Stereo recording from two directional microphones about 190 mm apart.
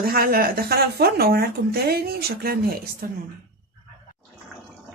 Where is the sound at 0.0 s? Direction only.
50° right (ahead or behind).